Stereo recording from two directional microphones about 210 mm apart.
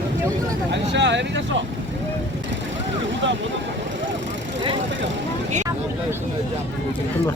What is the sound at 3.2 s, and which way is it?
Speech, 60° right (ahead or behind).